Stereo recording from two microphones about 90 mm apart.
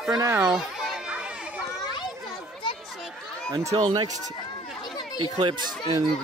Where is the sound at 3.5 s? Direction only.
45° right (ahead or behind).